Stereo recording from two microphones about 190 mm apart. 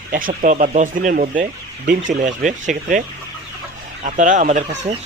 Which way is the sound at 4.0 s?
40° right (ahead or behind).